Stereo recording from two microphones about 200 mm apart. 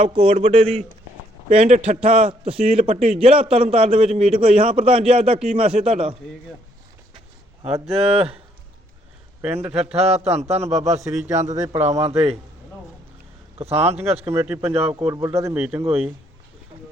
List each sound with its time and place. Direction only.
0.0 s a man's voice: 25° right (ahead or behind)
7.6 s a man's voice: 30° right (ahead or behind)
9.4 s speech: 10° right (ahead or behind)
9.7 s a man's voice: 30° right (ahead or behind)
11.5 s speech: 15° right (ahead or behind)
11.9 s a man's voice: 30° right (ahead or behind)
13.6 s a man's voice: 30° right (ahead or behind)
14.3 s speech: 10° right (ahead or behind)
14.7 s a man's voice: 30° right (ahead or behind)
14.9 s speech: 15° right (ahead or behind)